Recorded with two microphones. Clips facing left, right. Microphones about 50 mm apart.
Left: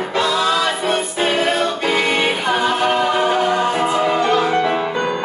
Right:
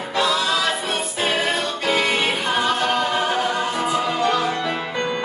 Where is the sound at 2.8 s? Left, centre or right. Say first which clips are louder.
Left 4 dB; centre.